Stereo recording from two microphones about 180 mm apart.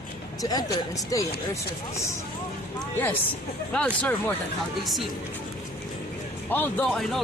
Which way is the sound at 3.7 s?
5° left (ahead or behind).